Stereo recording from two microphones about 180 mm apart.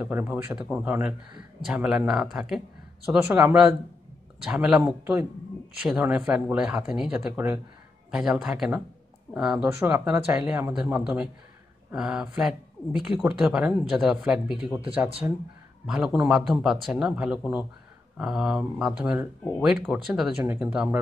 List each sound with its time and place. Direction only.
0.0 s speech: 10° right (ahead or behind)
15.2 s speech: 15° right (ahead or behind)
15.9 s speech: 5° right (ahead or behind)